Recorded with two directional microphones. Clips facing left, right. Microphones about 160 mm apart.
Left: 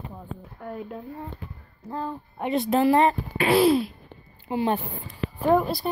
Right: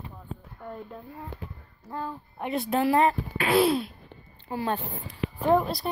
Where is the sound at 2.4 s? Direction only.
Centre (ahead or behind).